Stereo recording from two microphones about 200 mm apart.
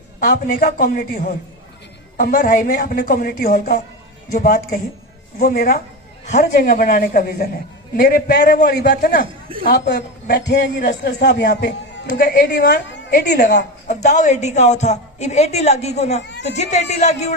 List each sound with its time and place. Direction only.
0.2 s a man's voice: 45° left (ahead or behind)
6.2 s a man's voice: 40° left (ahead or behind)
13.8 s a woman's voice: 35° left (ahead or behind)